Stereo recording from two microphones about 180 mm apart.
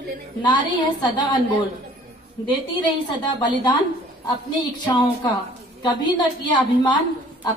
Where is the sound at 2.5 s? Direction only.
25° left (ahead or behind).